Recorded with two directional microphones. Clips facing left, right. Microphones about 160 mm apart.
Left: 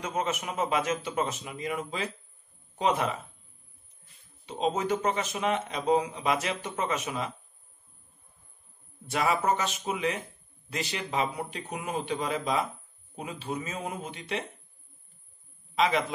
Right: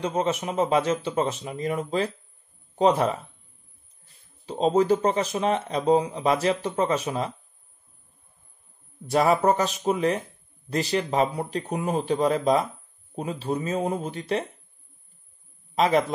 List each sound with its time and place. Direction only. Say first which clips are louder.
0.0 s speech: right 6 dB; 30° right (ahead or behind)
9.1 s speech: right 6 dB; 35° right (ahead or behind)
15.7 s a man's voice: right 5 dB; 40° right (ahead or behind)